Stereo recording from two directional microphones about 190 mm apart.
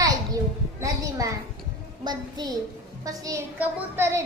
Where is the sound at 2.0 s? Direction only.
20° right (ahead or behind).